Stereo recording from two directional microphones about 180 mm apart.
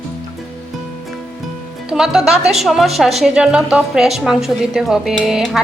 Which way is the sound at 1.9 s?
Centre (ahead or behind).